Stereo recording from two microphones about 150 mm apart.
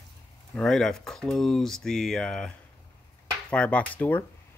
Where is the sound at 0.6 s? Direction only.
5° left (ahead or behind).